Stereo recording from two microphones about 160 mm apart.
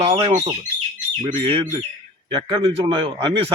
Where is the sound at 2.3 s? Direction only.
30° right (ahead or behind).